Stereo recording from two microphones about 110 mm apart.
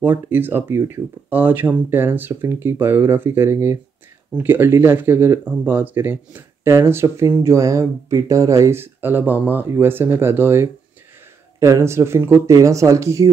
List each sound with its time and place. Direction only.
0.0 s speech: 20° right (ahead or behind)